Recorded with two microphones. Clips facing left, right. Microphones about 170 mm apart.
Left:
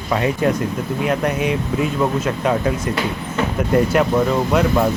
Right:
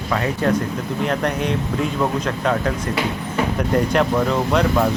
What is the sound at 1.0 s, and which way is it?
Speech, 10° left (ahead or behind).